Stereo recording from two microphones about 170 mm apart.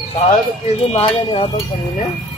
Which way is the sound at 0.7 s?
35° left (ahead or behind).